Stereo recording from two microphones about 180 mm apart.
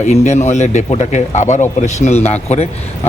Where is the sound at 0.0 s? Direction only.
40° left (ahead or behind).